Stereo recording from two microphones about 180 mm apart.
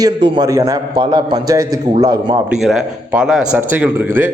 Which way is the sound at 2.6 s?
Centre (ahead or behind).